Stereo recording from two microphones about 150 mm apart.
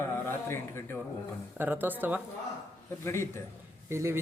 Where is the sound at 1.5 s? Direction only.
15° right (ahead or behind).